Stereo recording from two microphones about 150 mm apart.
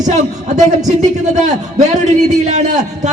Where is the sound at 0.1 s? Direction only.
55° right (ahead or behind).